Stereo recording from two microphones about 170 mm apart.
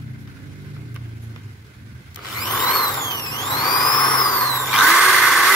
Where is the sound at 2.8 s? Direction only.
20° left (ahead or behind).